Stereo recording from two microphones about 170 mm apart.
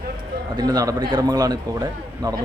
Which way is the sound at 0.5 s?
25° right (ahead or behind).